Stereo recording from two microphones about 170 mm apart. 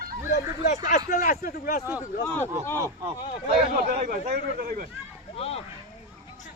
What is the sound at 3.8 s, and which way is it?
Speech, 45° right (ahead or behind).